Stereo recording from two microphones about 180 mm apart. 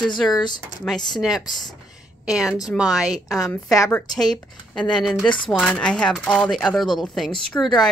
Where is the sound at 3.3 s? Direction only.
20° left (ahead or behind).